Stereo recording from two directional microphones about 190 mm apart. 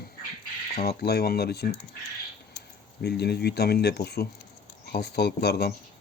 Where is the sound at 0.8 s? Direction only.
55° left (ahead or behind).